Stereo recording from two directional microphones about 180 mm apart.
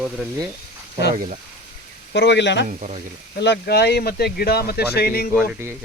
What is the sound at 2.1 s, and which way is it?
Speech, 75° left (ahead or behind).